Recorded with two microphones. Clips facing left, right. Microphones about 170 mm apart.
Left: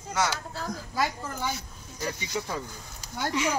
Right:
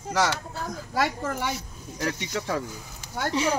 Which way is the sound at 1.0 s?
75° right (ahead or behind).